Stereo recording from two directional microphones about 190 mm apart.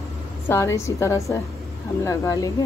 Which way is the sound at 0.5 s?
15° left (ahead or behind).